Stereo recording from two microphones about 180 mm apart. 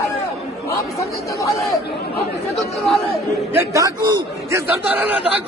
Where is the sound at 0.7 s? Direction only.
15° left (ahead or behind).